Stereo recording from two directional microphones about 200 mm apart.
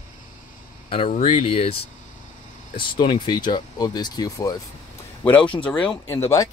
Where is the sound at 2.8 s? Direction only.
25° left (ahead or behind).